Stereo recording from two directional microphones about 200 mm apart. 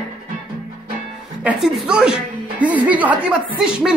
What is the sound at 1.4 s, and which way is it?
A woman's voice, 5° right (ahead or behind).